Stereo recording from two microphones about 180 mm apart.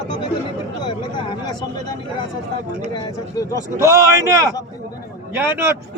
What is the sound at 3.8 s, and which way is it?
A man's voice, 15° right (ahead or behind).